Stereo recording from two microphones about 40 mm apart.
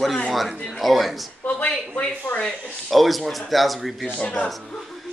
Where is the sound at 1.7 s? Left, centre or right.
Left.